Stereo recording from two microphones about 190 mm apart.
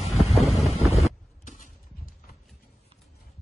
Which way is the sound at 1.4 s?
40° left (ahead or behind).